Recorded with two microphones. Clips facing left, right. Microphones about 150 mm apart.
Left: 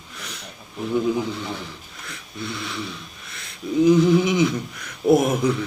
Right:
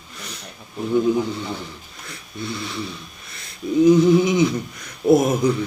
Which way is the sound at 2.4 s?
35° right (ahead or behind).